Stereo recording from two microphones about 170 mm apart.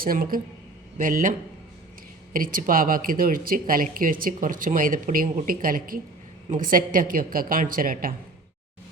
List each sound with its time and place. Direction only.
0.0 s a man's voice: 60° right (ahead or behind)